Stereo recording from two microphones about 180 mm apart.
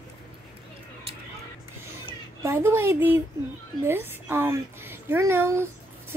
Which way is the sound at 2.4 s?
15° right (ahead or behind).